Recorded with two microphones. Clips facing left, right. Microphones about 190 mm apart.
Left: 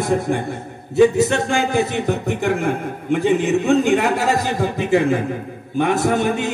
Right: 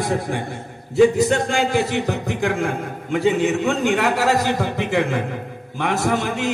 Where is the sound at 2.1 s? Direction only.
60° left (ahead or behind).